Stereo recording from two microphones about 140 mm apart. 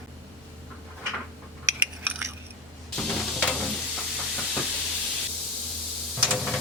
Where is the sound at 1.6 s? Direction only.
15° right (ahead or behind).